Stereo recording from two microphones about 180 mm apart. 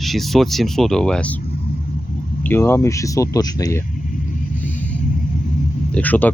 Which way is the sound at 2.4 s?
10° left (ahead or behind).